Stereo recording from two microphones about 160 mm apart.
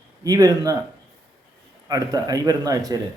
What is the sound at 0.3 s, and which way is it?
Speech, 20° right (ahead or behind).